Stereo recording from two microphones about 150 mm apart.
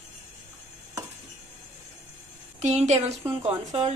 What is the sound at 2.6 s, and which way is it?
Speech, 50° right (ahead or behind).